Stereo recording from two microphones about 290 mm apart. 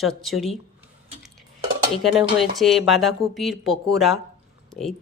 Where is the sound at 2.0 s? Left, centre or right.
Centre.